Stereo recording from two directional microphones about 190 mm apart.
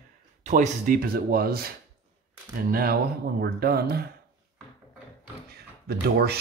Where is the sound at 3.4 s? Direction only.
55° right (ahead or behind).